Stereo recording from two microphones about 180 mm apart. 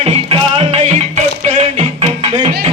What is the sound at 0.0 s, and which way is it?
Music, 35° right (ahead or behind).